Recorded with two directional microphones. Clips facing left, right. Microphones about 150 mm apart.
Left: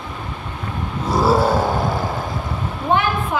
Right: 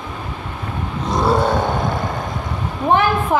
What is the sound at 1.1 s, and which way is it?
Roar, 5° left (ahead or behind).